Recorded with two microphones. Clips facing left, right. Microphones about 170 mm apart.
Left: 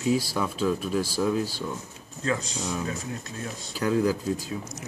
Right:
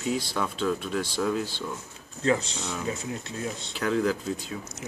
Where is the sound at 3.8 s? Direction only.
10° left (ahead or behind).